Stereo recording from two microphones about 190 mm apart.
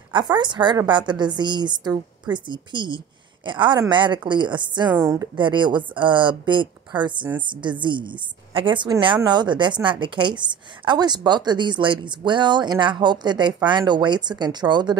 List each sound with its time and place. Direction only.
0.1 s a woman's voice: 25° right (ahead or behind)